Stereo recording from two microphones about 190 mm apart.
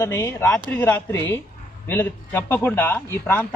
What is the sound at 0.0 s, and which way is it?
Speech, 10° left (ahead or behind).